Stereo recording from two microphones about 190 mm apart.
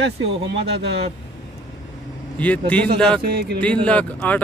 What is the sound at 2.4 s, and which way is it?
Speech, 5° left (ahead or behind).